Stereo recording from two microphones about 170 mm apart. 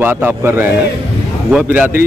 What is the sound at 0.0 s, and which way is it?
A man's voice, 15° right (ahead or behind).